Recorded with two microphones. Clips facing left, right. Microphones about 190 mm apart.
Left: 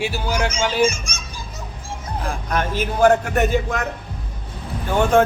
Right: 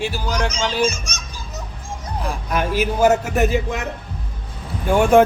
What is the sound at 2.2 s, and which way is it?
A man's voice, 10° right (ahead or behind).